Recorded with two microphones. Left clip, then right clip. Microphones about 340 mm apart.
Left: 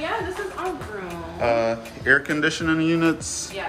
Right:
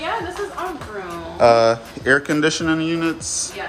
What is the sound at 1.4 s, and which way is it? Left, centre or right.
Speech, centre.